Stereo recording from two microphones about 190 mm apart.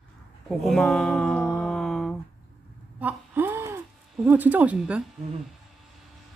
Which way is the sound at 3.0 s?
10° right (ahead or behind).